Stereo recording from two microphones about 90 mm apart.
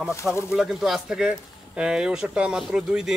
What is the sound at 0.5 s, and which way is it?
Speech, 5° right (ahead or behind).